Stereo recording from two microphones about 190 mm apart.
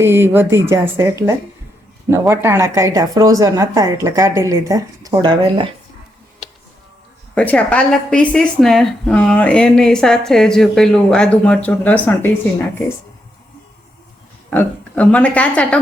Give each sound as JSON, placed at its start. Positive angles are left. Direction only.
{"t": 0.0, "sound": "speech", "side_deg": -15}
{"t": 7.3, "sound": "a woman's voice", "side_deg": 5}
{"t": 14.5, "sound": "a woman's voice", "side_deg": 10}